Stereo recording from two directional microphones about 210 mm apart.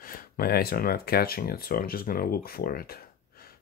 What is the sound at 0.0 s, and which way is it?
Speech, 40° left (ahead or behind).